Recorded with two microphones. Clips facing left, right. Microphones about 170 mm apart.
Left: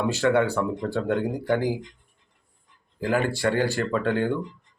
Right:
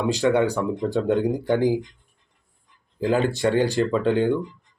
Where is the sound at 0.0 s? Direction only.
15° right (ahead or behind).